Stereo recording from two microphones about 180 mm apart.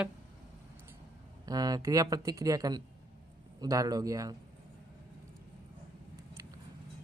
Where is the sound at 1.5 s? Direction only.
20° right (ahead or behind).